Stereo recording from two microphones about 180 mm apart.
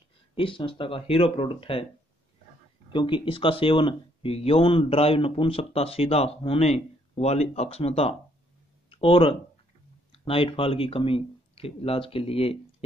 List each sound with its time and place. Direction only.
0.3 s speech: 30° left (ahead or behind)
2.9 s speech: 25° left (ahead or behind)